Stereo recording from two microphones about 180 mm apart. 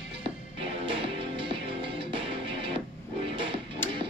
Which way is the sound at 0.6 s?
30° right (ahead or behind).